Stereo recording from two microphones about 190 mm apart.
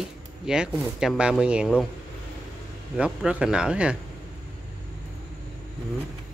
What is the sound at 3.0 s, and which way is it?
Speech, 5° right (ahead or behind).